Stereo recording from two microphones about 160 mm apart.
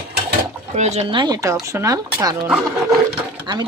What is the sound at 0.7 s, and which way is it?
Speech, 45° right (ahead or behind).